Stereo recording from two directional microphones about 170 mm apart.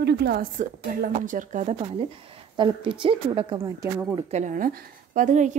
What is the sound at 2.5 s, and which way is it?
A woman's voice, 30° right (ahead or behind).